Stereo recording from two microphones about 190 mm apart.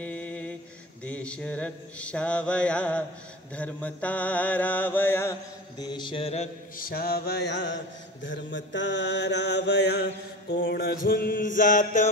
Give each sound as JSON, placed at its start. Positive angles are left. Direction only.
{"t": 0.0, "sound": "mantra", "side_deg": 10}
{"t": 5.8, "sound": "music", "side_deg": 25}
{"t": 6.8, "sound": "mantra", "side_deg": 50}